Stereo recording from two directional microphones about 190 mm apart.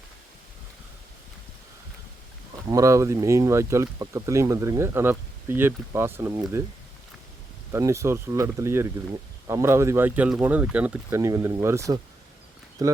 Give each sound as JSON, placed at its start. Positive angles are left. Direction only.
{"t": 2.6, "sound": "speech", "side_deg": -15}
{"t": 7.7, "sound": "speech", "side_deg": -15}